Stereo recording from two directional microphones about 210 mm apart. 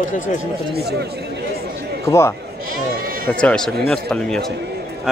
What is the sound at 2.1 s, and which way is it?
Speech, 10° left (ahead or behind).